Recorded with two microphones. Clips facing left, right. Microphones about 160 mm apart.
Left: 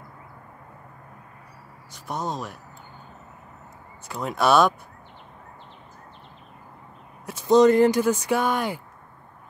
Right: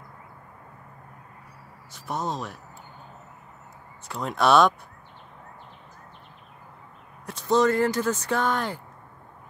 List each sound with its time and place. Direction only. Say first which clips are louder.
1.9 s speech: even; centre (ahead or behind)
4.1 s speech: even; 5° left (ahead or behind)
7.2 s speech: left 5 dB; 10° left (ahead or behind)